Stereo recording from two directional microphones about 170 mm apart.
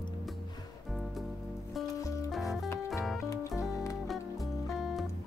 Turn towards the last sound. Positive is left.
turn(degrees=0)  # may be behind; listen again after turning